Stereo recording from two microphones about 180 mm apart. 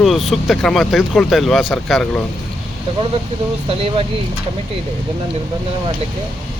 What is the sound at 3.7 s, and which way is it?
Speech, 30° right (ahead or behind).